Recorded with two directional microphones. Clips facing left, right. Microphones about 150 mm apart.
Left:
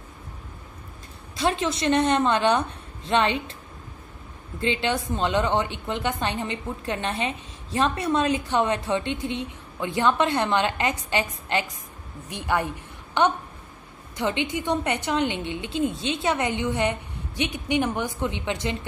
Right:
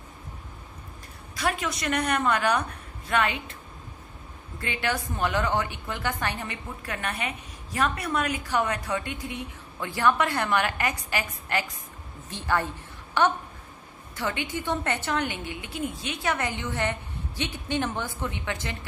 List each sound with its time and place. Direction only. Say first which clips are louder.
1.3 s a woman's voice: left 4 dB; 25° left (ahead or behind)
4.6 s a woman's voice: left 5 dB; 25° left (ahead or behind)